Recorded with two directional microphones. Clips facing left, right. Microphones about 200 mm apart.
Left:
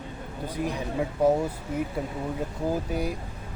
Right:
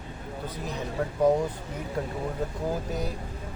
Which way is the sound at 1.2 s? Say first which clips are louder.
Even; 10° left (ahead or behind).